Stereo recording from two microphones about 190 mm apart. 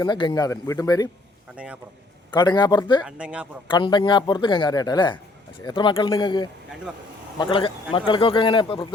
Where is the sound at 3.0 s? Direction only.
5° right (ahead or behind).